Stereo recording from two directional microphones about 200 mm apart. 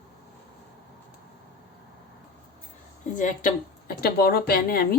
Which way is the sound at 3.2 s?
40° left (ahead or behind).